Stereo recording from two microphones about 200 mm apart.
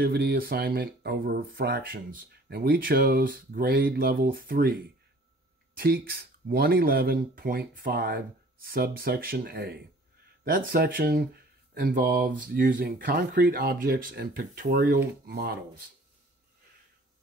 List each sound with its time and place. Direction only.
0.0 s speech: 50° right (ahead or behind)
5.8 s speech: 50° right (ahead or behind)